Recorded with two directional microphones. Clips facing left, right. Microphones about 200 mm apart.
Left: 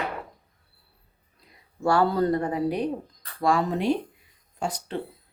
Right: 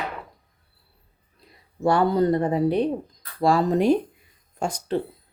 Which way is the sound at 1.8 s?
20° right (ahead or behind).